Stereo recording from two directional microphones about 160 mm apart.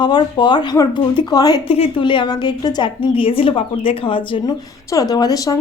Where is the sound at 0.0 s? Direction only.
30° left (ahead or behind).